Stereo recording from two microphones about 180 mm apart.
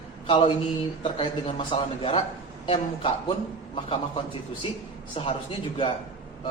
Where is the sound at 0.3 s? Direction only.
30° left (ahead or behind).